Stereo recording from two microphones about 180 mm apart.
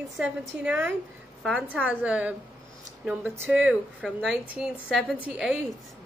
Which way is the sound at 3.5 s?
5° right (ahead or behind).